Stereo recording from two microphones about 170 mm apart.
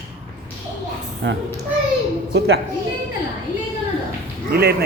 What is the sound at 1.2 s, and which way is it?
Speech, 90° right.